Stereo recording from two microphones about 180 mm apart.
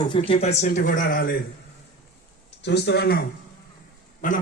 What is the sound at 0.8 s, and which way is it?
Speech, 50° left (ahead or behind).